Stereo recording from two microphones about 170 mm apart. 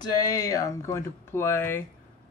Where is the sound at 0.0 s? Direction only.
25° left (ahead or behind).